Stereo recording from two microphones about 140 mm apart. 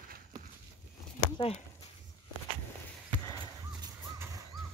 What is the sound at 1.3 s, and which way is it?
Speech, 45° left (ahead or behind).